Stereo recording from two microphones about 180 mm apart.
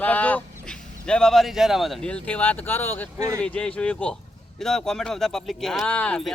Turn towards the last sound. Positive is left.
turn(degrees=5)  # may be behind; listen again after turning